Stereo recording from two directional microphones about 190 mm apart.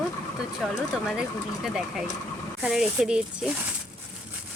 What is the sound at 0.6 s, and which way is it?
Speech, centre (ahead or behind).